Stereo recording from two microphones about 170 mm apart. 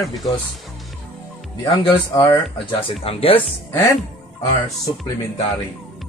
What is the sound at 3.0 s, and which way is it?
Speech, 35° left (ahead or behind).